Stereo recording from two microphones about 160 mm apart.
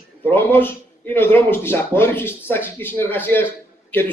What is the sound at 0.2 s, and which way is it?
A man's voice, 15° left (ahead or behind).